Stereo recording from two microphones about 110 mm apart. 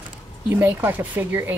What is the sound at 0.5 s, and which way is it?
Speech, 20° right (ahead or behind).